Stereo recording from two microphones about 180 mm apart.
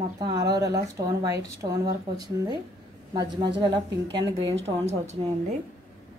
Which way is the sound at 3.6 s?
25° right (ahead or behind).